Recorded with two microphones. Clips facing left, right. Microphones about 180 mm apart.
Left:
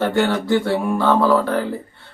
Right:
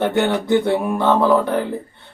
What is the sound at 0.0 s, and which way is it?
Speech, 15° right (ahead or behind).